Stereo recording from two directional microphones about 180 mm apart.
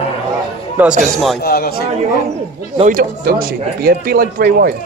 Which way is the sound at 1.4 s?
60° left (ahead or behind).